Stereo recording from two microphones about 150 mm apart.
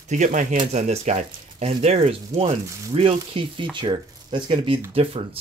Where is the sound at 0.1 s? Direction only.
55° right (ahead or behind).